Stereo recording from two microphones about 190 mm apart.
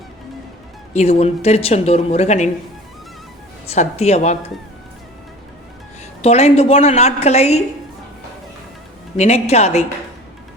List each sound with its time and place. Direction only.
0.9 s speech: 35° left (ahead or behind)
3.7 s speech: 35° left (ahead or behind)
6.2 s speech: 35° left (ahead or behind)
9.1 s speech: 35° left (ahead or behind)